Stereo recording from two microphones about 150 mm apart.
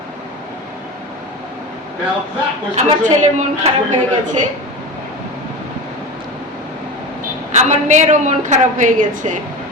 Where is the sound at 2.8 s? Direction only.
50° right (ahead or behind).